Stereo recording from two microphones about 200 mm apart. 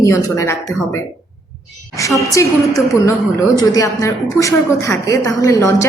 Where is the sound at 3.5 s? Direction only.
20° left (ahead or behind).